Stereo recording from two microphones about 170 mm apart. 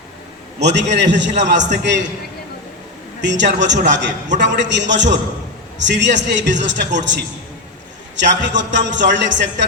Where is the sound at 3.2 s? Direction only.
90° right.